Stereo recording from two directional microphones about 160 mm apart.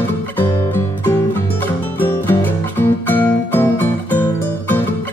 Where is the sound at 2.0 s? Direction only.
10° left (ahead or behind).